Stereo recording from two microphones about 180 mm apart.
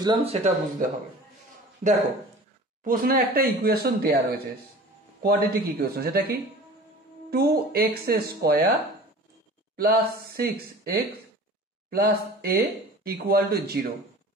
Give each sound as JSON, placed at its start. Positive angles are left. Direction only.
{"t": 0.0, "sound": "speech", "side_deg": -30}
{"t": 2.8, "sound": "speech", "side_deg": -50}
{"t": 9.8, "sound": "speech", "side_deg": -55}